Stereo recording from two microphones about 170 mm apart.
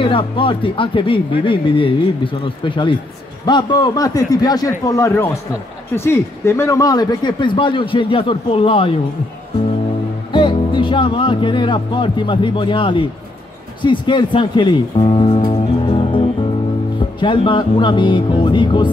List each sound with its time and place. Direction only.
0.0 s speech: 30° left (ahead or behind)
10.3 s speech: 30° left (ahead or behind)